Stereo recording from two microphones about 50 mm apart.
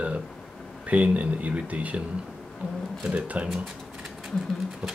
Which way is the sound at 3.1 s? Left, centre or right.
Right.